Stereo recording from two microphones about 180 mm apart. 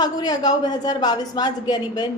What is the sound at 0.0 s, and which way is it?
A woman's voice, 20° left (ahead or behind).